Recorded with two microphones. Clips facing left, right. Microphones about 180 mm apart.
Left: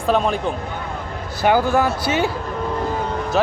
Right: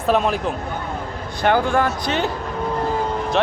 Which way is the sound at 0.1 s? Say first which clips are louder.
Even; centre (ahead or behind).